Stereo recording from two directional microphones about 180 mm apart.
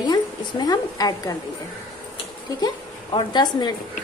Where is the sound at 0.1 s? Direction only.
20° left (ahead or behind).